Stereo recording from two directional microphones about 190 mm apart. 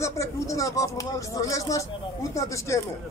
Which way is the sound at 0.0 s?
15° left (ahead or behind).